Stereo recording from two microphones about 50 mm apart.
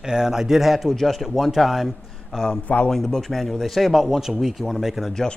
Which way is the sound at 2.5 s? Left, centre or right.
Left.